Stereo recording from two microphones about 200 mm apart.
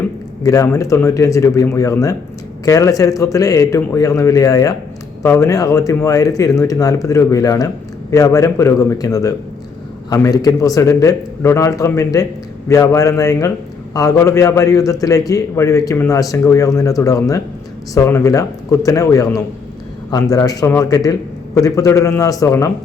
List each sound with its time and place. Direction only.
0.4 s a man's voice: 15° left (ahead or behind)